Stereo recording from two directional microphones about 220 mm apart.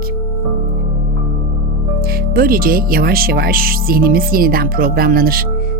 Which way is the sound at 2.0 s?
40° right (ahead or behind).